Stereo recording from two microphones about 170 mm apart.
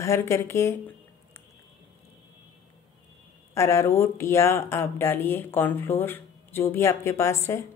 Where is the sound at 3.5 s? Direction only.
15° left (ahead or behind).